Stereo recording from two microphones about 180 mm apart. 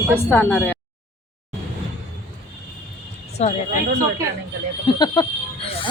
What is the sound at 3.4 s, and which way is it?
Speech, 35° left (ahead or behind).